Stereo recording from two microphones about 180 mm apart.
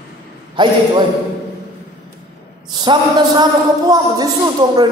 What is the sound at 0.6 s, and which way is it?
Speech, 25° right (ahead or behind).